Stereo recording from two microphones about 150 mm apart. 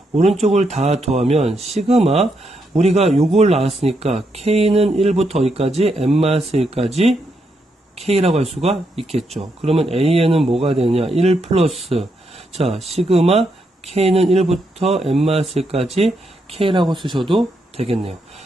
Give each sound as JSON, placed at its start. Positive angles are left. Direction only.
{"t": 0.4, "sound": "speech", "side_deg": -50}